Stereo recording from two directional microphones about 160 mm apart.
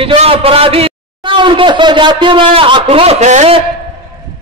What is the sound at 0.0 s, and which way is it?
A man's voice, 35° right (ahead or behind).